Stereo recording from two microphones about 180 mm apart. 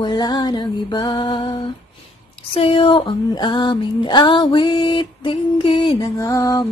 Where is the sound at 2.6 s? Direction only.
30° left (ahead or behind).